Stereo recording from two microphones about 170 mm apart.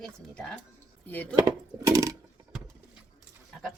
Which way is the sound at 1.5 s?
20° right (ahead or behind).